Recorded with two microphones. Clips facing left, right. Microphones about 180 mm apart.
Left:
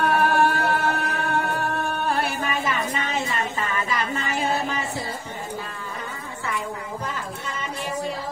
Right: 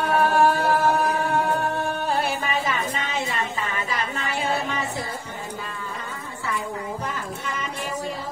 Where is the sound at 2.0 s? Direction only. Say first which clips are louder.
Even; 60° left (ahead or behind).